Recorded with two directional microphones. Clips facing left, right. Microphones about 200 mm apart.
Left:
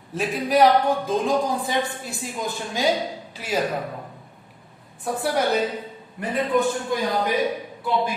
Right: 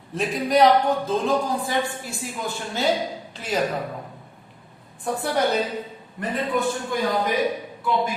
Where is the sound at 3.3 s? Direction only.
10° left (ahead or behind).